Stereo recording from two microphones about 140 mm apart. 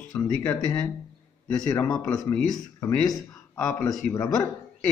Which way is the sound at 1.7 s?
25° left (ahead or behind).